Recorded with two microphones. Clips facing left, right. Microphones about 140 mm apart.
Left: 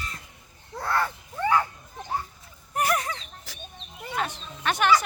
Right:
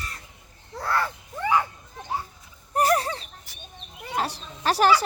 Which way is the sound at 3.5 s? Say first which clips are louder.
Left 5 dB; 90° left.